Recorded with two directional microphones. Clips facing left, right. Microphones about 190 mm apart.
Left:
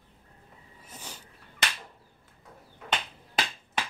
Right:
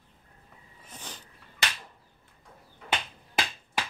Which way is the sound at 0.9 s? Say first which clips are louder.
Right 1 dB; 10° left (ahead or behind).